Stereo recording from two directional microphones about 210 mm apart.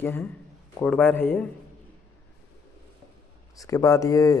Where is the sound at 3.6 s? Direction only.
15° left (ahead or behind).